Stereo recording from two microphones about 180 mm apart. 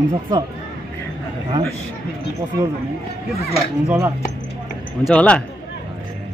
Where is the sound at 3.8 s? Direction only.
10° right (ahead or behind).